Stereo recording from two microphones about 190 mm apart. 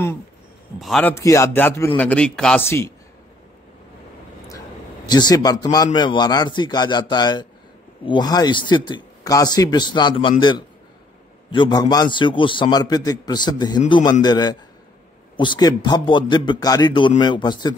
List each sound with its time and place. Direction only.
0.7 s a man's voice: centre (ahead or behind)
1.1 s speech: 15° left (ahead or behind)
4.5 s a sound: 20° left (ahead or behind)
5.9 s a man's voice: 25° left (ahead or behind)
11.5 s a man's voice: 25° left (ahead or behind)